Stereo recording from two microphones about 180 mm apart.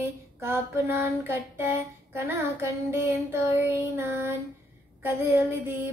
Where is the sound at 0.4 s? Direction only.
15° right (ahead or behind).